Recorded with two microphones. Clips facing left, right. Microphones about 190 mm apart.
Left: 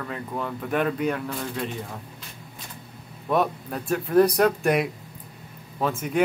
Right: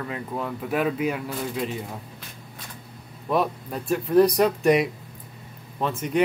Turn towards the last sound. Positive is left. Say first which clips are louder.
# even
turn(degrees=5)  # may be behind; listen again after turning